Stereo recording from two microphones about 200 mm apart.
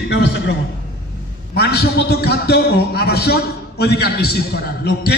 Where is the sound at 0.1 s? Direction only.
60° left (ahead or behind).